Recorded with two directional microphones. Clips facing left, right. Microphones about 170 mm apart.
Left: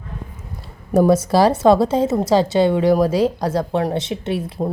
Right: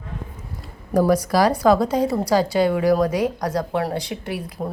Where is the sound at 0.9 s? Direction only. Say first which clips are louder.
Left 3 dB; 25° left (ahead or behind).